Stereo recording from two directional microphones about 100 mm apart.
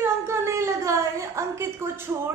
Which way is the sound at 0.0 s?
25° right (ahead or behind).